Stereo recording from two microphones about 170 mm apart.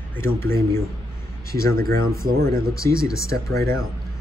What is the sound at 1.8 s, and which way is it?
Speech, 60° right (ahead or behind).